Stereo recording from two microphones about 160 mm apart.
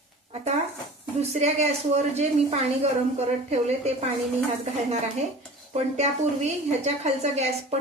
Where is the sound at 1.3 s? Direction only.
45° right (ahead or behind).